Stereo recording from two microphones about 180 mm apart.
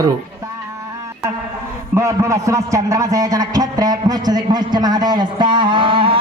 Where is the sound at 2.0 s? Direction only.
15° right (ahead or behind).